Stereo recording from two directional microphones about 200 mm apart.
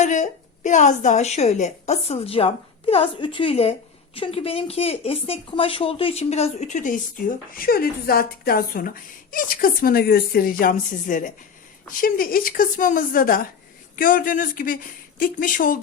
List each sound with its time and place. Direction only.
0.0 s a woman's voice: 35° left (ahead or behind)